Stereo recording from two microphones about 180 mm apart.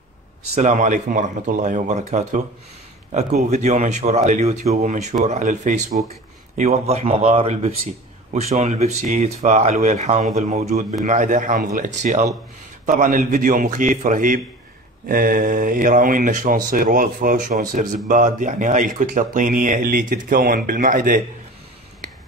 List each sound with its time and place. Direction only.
0.6 s speech: 40° right (ahead or behind)